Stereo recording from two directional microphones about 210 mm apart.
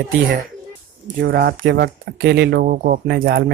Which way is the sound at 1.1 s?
50° right (ahead or behind).